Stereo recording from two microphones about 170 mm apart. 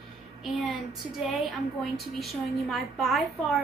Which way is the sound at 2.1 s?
Centre (ahead or behind).